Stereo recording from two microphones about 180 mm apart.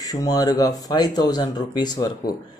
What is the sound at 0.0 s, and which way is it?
Speech, 20° left (ahead or behind).